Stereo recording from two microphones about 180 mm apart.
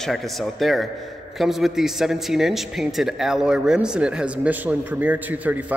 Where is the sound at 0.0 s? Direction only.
Centre (ahead or behind).